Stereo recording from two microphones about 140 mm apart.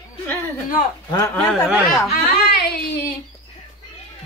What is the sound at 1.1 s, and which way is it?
Speech, 25° left (ahead or behind).